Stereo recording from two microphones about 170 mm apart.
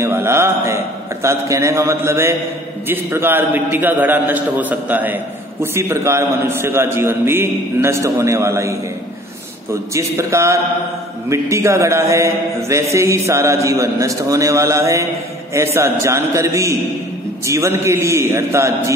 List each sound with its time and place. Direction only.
0.0 s a man's voice: 15° right (ahead or behind)
9.9 s a man's voice: 15° right (ahead or behind)